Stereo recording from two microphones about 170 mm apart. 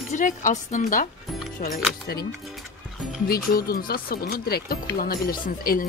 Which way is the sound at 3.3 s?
60° left (ahead or behind).